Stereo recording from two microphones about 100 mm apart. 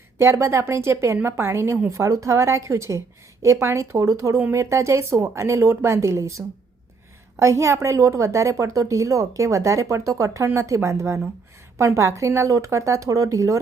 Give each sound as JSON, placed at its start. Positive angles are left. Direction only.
{"t": 0.2, "sound": "a woman's voice", "side_deg": -25}